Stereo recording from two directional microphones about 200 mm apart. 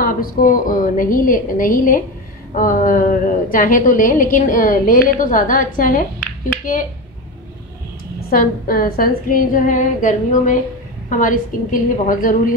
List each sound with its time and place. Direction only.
0.0 s a woman's voice: 45° left (ahead or behind)
6.1 s music: 10° left (ahead or behind)
8.3 s a woman's voice: 45° left (ahead or behind)